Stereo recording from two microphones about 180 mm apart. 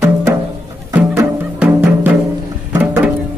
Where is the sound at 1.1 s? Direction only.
10° right (ahead or behind).